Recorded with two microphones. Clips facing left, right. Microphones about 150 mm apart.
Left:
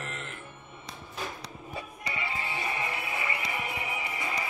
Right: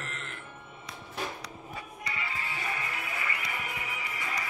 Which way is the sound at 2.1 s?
20° left (ahead or behind).